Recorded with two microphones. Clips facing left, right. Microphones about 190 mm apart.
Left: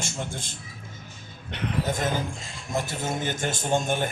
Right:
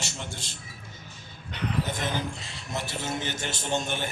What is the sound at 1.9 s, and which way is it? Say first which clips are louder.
A man's voice: left 4 dB; 45° left (ahead or behind).